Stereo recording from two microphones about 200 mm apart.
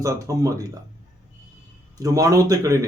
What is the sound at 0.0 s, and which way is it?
Speech, 15° right (ahead or behind).